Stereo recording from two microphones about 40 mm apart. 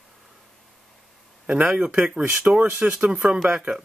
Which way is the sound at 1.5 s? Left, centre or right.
Right.